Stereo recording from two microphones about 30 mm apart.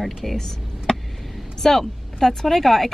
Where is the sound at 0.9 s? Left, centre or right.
Left.